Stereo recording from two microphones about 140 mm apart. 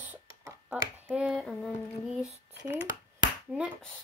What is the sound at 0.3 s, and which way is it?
Finger snapping, 25° right (ahead or behind).